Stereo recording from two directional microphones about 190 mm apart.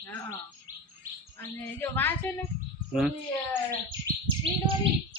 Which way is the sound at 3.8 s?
25° right (ahead or behind).